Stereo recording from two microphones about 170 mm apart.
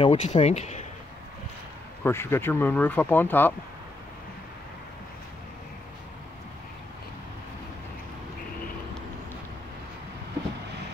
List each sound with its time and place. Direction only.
0.0 s speech: 35° left (ahead or behind)
2.0 s speech: 15° left (ahead or behind)